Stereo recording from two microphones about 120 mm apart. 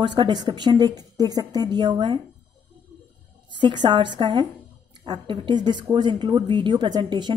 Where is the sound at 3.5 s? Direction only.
40° right (ahead or behind).